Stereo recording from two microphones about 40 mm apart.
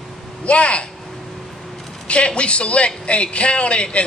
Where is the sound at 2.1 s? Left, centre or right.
Left.